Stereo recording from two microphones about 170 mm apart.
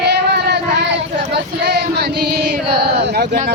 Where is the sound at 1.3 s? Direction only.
75° right (ahead or behind).